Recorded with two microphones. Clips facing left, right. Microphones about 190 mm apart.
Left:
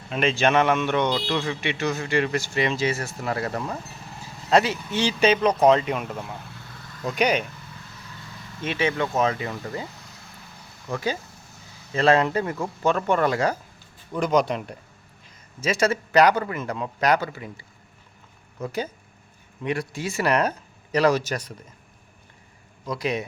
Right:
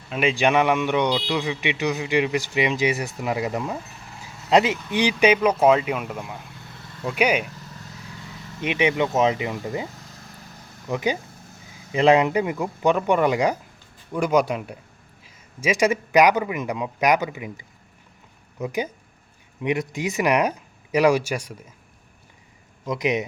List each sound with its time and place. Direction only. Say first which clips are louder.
0.1 s a man's voice: right 1 dB; 10° right (ahead or behind)
8.6 s a man's voice: right 3 dB; 15° right (ahead or behind)
22.9 s speech: right 3 dB; 20° right (ahead or behind)